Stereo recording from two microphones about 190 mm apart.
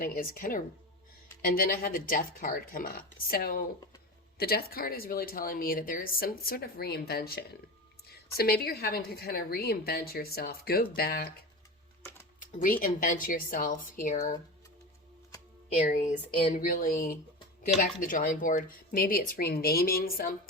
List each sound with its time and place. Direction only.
0.0 s a woman's voice: 45° left (ahead or behind)
12.4 s speech: 45° left (ahead or behind)
15.7 s speech: 40° left (ahead or behind)